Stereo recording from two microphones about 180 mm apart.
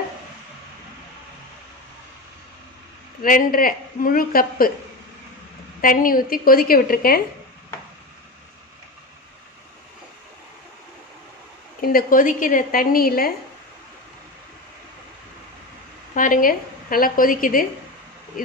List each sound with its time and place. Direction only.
3.2 s a woman's voice: 50° left (ahead or behind)
5.8 s a woman's voice: 50° left (ahead or behind)
11.8 s a woman's voice: 55° left (ahead or behind)
16.2 s a woman's voice: 50° left (ahead or behind)